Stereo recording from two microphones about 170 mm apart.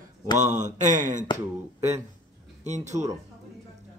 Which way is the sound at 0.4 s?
45° right (ahead or behind).